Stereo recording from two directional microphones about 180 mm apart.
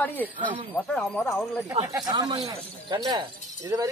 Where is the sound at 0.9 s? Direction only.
10° left (ahead or behind).